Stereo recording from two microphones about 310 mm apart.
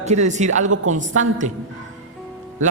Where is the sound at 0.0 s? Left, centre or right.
Right.